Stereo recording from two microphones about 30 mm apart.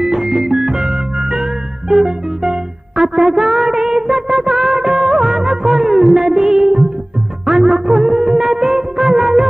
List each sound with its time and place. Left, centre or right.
0.0 s music: centre